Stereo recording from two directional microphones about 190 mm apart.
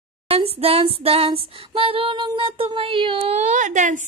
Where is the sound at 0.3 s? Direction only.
30° right (ahead or behind).